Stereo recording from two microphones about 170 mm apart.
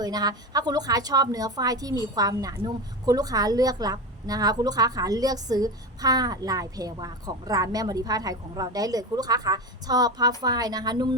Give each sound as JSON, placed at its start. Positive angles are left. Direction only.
{"t": 0.0, "sound": "a woman's voice", "side_deg": -25}